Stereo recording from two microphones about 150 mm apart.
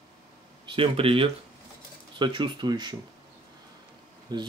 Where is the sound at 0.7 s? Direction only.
40° right (ahead or behind).